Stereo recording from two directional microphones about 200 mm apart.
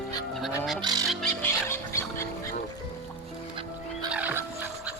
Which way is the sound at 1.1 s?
5° left (ahead or behind).